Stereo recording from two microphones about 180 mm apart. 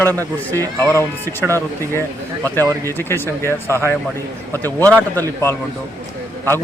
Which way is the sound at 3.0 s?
10° left (ahead or behind).